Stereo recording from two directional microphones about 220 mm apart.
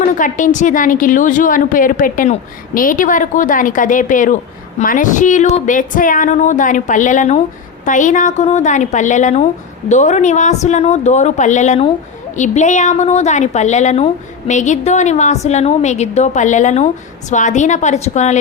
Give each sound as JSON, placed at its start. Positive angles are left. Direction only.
{"t": 0.2, "sound": "a woman's voice", "side_deg": 35}